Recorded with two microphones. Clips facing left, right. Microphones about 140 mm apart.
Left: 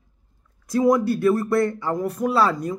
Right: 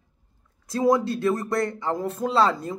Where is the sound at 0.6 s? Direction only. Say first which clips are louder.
Left 3 dB; 25° right (ahead or behind).